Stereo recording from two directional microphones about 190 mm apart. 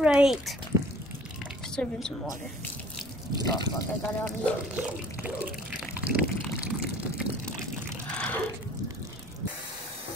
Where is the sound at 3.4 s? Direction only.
20° left (ahead or behind).